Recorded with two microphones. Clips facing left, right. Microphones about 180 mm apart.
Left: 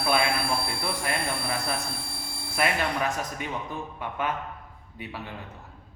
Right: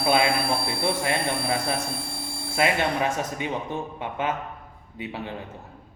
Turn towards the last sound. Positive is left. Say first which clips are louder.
# right 5 dB
turn(degrees=-25)  # may be behind; listen again after turning